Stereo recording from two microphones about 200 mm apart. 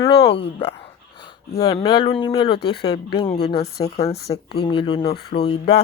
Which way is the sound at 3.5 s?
50° left (ahead or behind).